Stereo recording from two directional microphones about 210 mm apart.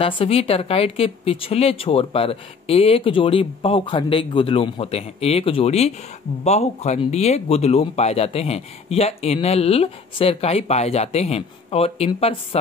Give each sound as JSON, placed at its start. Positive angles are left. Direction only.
{"t": 0.0, "sound": "speech", "side_deg": 25}